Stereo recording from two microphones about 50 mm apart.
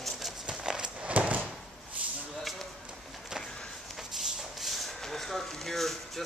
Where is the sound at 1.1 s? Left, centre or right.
Right.